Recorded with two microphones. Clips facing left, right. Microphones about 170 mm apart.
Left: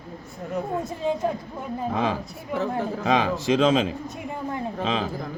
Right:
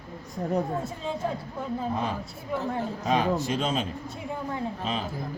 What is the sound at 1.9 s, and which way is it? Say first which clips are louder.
A man's voice: left 4 dB; 90° left.